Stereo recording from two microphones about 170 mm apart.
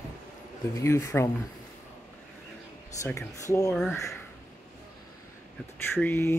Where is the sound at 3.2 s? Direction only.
20° left (ahead or behind).